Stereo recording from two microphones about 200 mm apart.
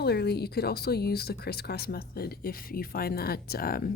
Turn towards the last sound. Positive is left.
turn(degrees=50)  # may be behind; listen again after turning